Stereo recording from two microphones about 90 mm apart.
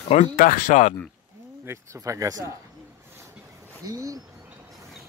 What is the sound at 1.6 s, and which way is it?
Speech, 30° right (ahead or behind).